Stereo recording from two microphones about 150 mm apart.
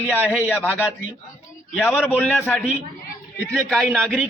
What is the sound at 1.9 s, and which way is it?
A man's voice, 15° left (ahead or behind).